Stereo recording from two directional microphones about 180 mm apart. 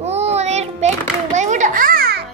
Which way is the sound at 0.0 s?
35° right (ahead or behind).